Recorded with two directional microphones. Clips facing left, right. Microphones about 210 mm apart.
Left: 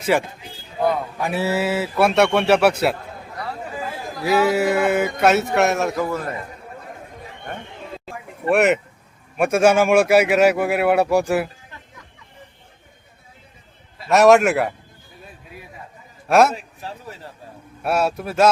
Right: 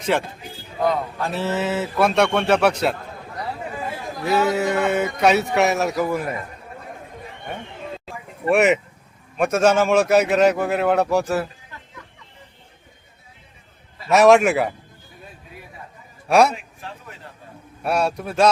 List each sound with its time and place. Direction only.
0.0 s speech: 10° left (ahead or behind)
4.2 s speech: 5° left (ahead or behind)
6.1 s a man's voice: 10° right (ahead or behind)
7.4 s chatter: 5° right (ahead or behind)
8.4 s a man's voice: centre (ahead or behind)
9.4 s speech: 10° left (ahead or behind)
14.1 s a man's voice: centre (ahead or behind)
16.3 s a man's voice: centre (ahead or behind)
16.6 s a sound: 35° left (ahead or behind)
17.8 s a man's voice: 5° left (ahead or behind)